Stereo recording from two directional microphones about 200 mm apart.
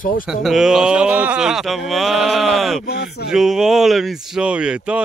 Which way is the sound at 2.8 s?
50° left (ahead or behind).